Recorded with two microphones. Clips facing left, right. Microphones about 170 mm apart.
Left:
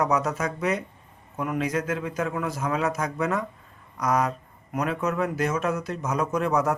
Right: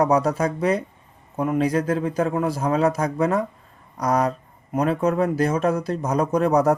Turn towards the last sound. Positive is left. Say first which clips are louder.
# right 5 dB
turn(degrees=-35)  # may be behind; listen again after turning